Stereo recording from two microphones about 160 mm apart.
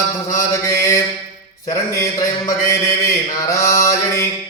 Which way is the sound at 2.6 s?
20° left (ahead or behind).